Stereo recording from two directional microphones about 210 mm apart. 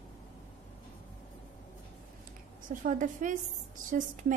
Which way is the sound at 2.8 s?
35° right (ahead or behind).